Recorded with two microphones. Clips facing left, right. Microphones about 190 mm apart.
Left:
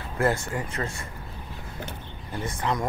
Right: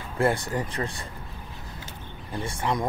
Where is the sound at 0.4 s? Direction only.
35° right (ahead or behind).